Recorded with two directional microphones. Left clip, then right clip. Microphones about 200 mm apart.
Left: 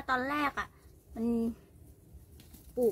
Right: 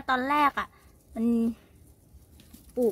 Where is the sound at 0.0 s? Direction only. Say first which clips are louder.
Right 7 dB; 45° right (ahead or behind).